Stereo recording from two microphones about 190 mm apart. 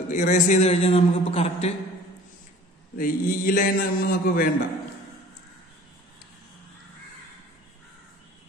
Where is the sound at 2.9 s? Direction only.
50° left (ahead or behind).